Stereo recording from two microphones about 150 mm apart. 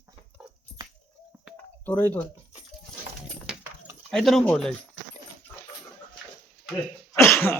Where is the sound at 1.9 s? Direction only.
10° left (ahead or behind).